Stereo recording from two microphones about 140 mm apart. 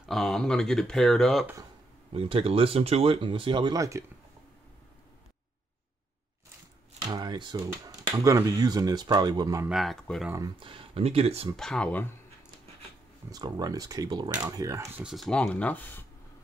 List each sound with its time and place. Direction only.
0.0 s speech: centre (ahead or behind)
2.1 s speech: 40° right (ahead or behind); by 4.0 s 25° right (ahead or behind)
7.1 s speech: 30° right (ahead or behind)
9.7 s speech: centre (ahead or behind)
10.6 s speech: 40° right (ahead or behind)
11.5 s speech: 5° left (ahead or behind)
13.3 s speech: 25° right (ahead or behind)
15.0 s speech: centre (ahead or behind); by 16.1 s 15° left (ahead or behind)